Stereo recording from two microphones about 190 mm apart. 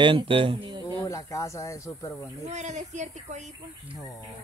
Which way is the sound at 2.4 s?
35° right (ahead or behind).